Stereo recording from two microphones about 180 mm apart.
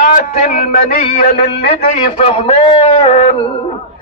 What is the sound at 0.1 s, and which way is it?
A man's voice, 45° left (ahead or behind).